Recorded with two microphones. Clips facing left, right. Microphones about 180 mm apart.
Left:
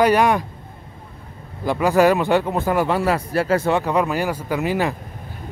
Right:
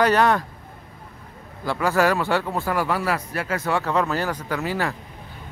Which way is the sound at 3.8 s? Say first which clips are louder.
Left 3 dB; 15° left (ahead or behind).